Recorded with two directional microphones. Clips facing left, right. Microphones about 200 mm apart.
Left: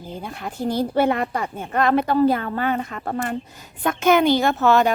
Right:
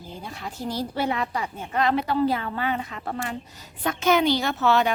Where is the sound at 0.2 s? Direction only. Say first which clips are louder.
Left 6 dB; 55° left (ahead or behind).